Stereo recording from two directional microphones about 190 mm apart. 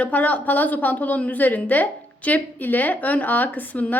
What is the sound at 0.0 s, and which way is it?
A woman's voice, 10° left (ahead or behind).